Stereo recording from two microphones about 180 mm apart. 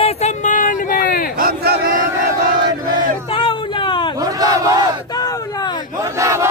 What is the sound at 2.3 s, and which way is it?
Battle cry, 25° right (ahead or behind).